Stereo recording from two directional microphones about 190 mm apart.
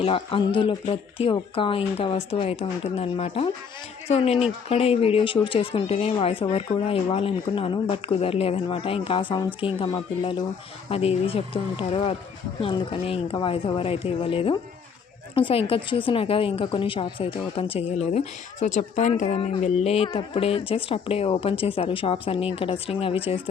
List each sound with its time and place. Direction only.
0.0 s speech: 30° left (ahead or behind)